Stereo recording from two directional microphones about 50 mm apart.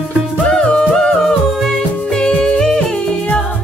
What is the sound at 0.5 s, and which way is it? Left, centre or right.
Music, centre.